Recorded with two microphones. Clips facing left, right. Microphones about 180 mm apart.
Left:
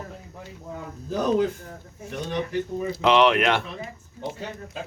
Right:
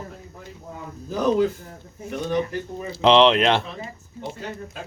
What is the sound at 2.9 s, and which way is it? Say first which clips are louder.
Speech: right 3 dB; 30° right (ahead or behind).